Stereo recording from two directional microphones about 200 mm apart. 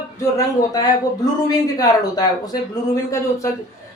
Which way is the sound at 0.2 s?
15° left (ahead or behind).